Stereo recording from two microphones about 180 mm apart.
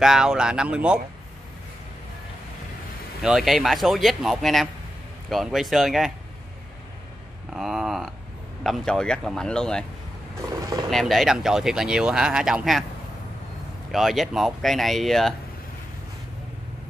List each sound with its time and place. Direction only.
0.0 s speech: 5° right (ahead or behind)
3.2 s speech: centre (ahead or behind)
7.5 s speech: centre (ahead or behind)
10.6 s speech: 20° right (ahead or behind)
10.9 s speech: centre (ahead or behind)
13.9 s speech: centre (ahead or behind)